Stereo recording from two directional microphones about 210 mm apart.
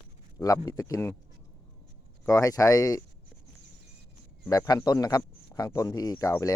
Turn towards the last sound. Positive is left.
turn(degrees=15)  # may be behind; listen again after turning